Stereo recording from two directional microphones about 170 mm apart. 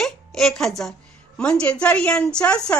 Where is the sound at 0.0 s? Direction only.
Centre (ahead or behind).